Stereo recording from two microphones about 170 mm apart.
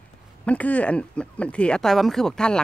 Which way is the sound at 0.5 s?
10° left (ahead or behind).